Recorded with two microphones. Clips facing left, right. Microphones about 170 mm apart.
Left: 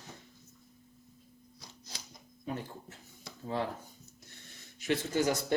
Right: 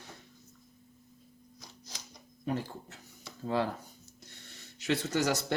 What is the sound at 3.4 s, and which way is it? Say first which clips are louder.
Speech: right 4 dB; 80° right.